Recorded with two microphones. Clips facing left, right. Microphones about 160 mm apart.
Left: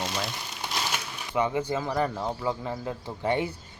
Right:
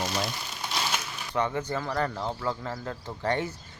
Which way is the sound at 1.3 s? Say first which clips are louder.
Left 2 dB; 10° left (ahead or behind).